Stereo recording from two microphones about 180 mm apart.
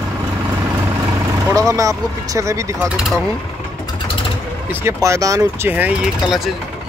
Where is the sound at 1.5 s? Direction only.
20° right (ahead or behind).